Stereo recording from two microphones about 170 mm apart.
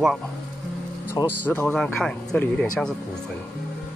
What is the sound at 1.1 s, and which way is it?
Speech, 10° left (ahead or behind).